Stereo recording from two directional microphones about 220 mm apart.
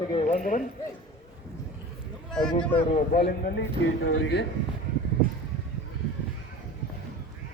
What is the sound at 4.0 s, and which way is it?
Speech, 60° left (ahead or behind).